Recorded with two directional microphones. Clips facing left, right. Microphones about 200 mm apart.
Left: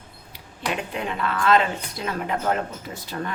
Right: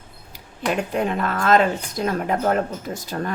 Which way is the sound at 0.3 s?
45° right (ahead or behind).